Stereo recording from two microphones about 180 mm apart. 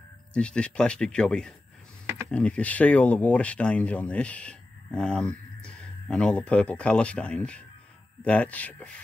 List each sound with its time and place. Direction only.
0.3 s speech: 5° left (ahead or behind)